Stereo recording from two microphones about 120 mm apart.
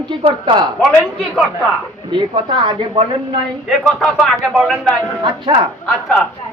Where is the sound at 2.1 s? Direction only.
40° right (ahead or behind).